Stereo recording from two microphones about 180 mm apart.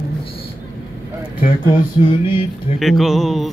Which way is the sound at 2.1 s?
25° left (ahead or behind).